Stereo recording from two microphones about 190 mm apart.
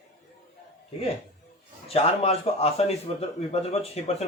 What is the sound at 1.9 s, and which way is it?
A man's voice, 30° left (ahead or behind).